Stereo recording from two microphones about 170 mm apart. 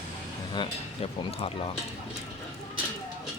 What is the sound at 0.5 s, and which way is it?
Speech, 25° left (ahead or behind).